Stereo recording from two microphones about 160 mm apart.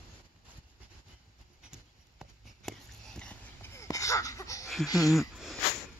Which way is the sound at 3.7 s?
20° left (ahead or behind).